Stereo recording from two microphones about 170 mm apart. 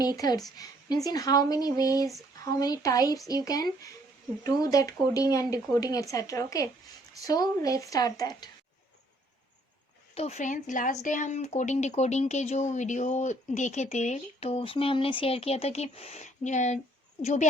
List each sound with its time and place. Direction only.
0.2 s speech: 20° left (ahead or behind)
10.2 s speech: 40° left (ahead or behind)